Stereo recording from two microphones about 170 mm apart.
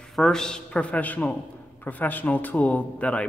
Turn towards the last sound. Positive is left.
turn(degrees=5)  # may be behind; listen again after turning